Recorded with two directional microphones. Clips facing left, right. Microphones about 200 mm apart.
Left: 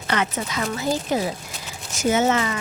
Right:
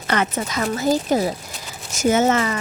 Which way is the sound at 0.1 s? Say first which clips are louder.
Right 3 dB; 45° right (ahead or behind).